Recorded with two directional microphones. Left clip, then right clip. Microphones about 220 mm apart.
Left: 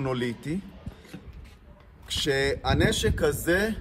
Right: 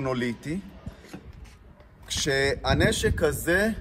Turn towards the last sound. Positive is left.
turn(degrees=10)  # may be behind; listen again after turning